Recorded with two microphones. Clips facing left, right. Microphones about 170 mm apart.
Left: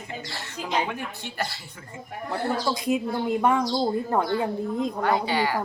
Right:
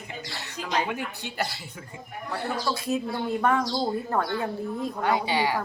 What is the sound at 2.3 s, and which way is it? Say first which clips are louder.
Speech: left 3 dB; 15° left (ahead or behind).